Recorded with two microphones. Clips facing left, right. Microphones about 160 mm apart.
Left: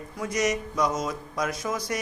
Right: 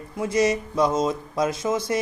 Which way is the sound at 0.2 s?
30° right (ahead or behind).